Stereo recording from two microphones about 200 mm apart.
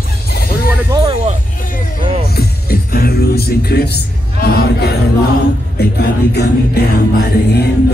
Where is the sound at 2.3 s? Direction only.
50° left (ahead or behind).